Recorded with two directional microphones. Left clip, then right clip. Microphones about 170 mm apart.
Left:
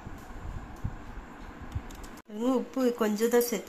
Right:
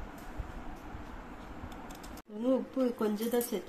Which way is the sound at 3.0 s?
30° left (ahead or behind).